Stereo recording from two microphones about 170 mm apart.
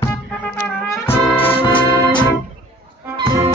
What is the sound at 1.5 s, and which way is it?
Organ, 30° left (ahead or behind).